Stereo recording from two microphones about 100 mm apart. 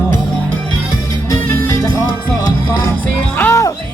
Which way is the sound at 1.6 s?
35° left (ahead or behind).